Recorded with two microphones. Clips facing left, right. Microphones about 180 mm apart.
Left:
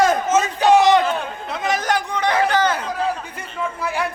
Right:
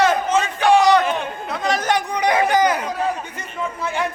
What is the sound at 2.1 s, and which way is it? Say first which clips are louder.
Speech: right 1 dB; 15° right (ahead or behind).